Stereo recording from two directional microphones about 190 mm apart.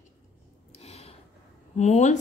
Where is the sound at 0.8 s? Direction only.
35° left (ahead or behind).